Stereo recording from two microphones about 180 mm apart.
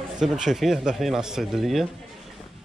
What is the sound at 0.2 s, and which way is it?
Speech, centre (ahead or behind).